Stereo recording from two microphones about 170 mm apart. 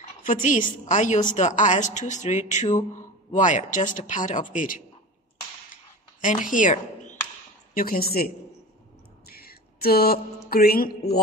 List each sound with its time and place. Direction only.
0.2 s speech: 50° left (ahead or behind)
6.2 s speech: 50° left (ahead or behind)
7.7 s music: 60° left (ahead or behind)
9.2 s a sound: 65° left (ahead or behind)
10.5 s music: 60° left (ahead or behind)